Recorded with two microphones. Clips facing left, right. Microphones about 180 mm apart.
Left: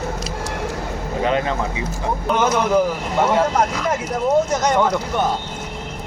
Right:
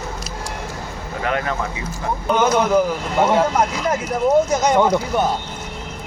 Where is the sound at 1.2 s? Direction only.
20° left (ahead or behind).